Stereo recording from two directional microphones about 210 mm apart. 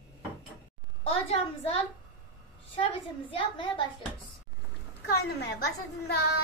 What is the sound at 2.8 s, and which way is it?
A woman's voice, 25° left (ahead or behind).